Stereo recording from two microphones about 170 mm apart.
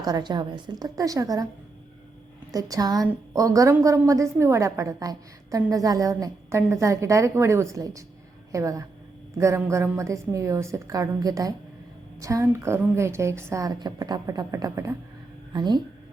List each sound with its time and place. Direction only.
0.0 s a woman's voice: 25° right (ahead or behind)
2.5 s a woman's voice: 20° right (ahead or behind)